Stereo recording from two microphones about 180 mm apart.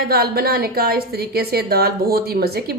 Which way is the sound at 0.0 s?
60° right (ahead or behind).